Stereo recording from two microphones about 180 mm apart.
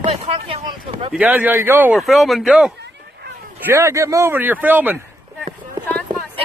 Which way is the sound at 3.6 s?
15° right (ahead or behind).